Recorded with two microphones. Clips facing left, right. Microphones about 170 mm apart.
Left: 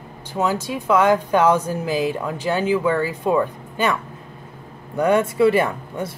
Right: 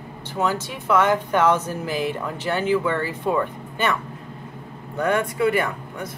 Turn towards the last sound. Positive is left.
turn(degrees=25)  # may be behind; listen again after turning